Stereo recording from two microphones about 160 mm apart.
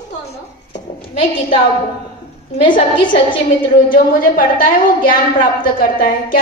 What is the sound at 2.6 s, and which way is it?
Speech, 30° left (ahead or behind).